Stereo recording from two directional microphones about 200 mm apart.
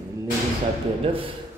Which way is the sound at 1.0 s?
25° right (ahead or behind).